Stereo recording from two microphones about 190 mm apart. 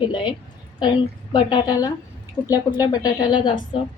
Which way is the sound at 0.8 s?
25° left (ahead or behind).